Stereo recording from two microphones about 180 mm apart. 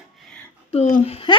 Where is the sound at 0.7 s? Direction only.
40° left (ahead or behind).